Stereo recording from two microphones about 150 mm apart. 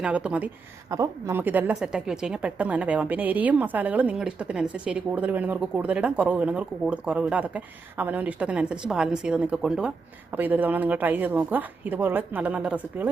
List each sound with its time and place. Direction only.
0.0 s a woman's voice: 5° right (ahead or behind)